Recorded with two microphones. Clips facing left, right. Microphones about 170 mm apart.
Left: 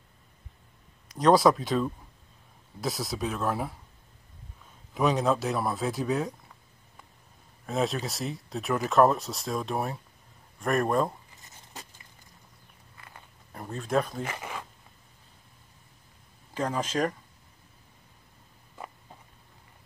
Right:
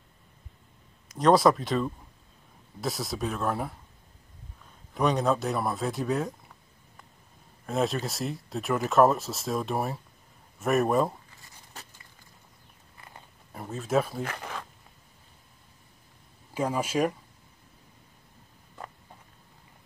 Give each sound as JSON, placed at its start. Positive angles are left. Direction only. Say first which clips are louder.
{"t": 1.1, "sound": "speech", "louder": "even", "side_deg": 0}
{"t": 4.9, "sound": "speech", "louder": "even", "side_deg": 0}
{"t": 7.6, "sound": "speech", "louder": "right 1 dB", "side_deg": 0}
{"t": 12.9, "sound": "walk", "louder": "right 1 dB", "side_deg": -25}
{"t": 13.5, "sound": "speech", "louder": "right 1 dB", "side_deg": 0}
{"t": 14.2, "sound": "zipper", "louder": "even", "side_deg": 5}
{"t": 16.5, "sound": "speech", "louder": "right 2 dB", "side_deg": -10}